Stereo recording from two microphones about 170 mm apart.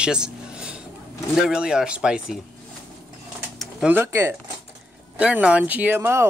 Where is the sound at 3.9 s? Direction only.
15° right (ahead or behind).